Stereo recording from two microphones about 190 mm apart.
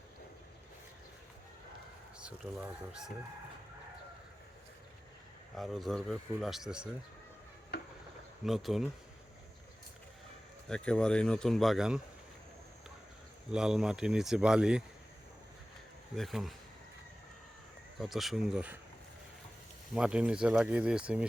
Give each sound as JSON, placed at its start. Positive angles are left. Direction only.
{"t": 2.1, "sound": "speech", "side_deg": -5}
{"t": 5.5, "sound": "speech", "side_deg": 0}
{"t": 7.7, "sound": "a sound", "side_deg": 55}
{"t": 8.4, "sound": "speech", "side_deg": 0}
{"t": 10.7, "sound": "speech", "side_deg": 5}
{"t": 13.5, "sound": "speech", "side_deg": -5}
{"t": 16.1, "sound": "speech", "side_deg": 0}
{"t": 18.0, "sound": "speech", "side_deg": 0}
{"t": 19.9, "sound": "speech", "side_deg": -5}